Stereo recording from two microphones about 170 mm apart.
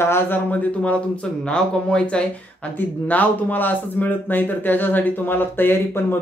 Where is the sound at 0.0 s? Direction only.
15° left (ahead or behind).